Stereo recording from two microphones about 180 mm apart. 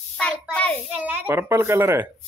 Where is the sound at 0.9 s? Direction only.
10° right (ahead or behind).